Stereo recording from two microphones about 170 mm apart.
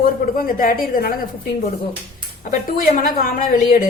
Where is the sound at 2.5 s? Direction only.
55° left (ahead or behind).